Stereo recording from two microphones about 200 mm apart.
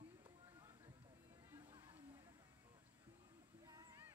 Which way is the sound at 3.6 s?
20° right (ahead or behind).